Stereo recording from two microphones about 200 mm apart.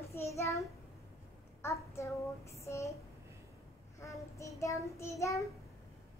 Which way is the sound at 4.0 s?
15° left (ahead or behind).